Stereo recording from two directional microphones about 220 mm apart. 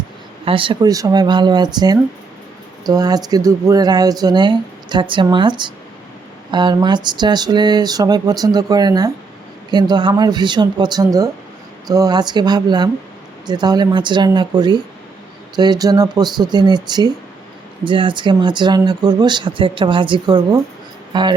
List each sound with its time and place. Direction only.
0.4 s speech: 25° right (ahead or behind)